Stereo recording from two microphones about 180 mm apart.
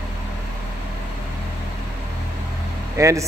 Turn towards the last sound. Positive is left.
turn(degrees=-15)  # may be behind; listen again after turning